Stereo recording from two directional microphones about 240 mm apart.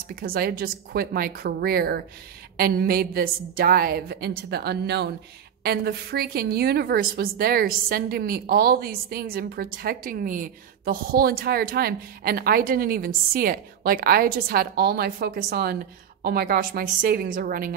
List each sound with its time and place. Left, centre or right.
0.1 s a woman's voice: right